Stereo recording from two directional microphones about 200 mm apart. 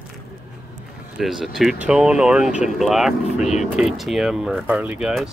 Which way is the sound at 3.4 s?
35° left (ahead or behind).